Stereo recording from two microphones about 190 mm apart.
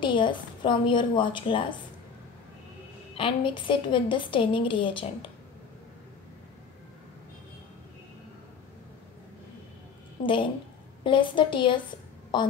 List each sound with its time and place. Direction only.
0.0 s a woman's voice: 25° left (ahead or behind)
3.2 s a woman's voice: 25° left (ahead or behind)
10.2 s a woman's voice: 25° left (ahead or behind)